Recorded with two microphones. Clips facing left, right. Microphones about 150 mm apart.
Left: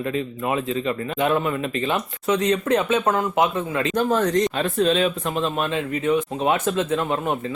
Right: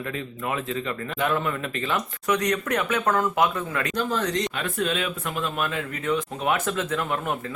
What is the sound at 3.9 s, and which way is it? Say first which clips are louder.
Speech: left 7 dB; 50° left (ahead or behind).